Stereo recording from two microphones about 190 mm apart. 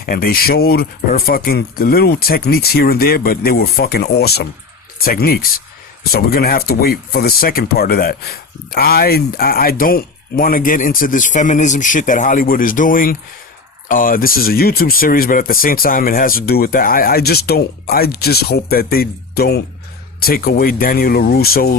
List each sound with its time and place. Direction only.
0.0 s speech: 50° left (ahead or behind)